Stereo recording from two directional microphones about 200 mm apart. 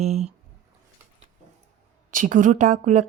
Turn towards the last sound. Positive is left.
turn(degrees=-40)  # may be behind; listen again after turning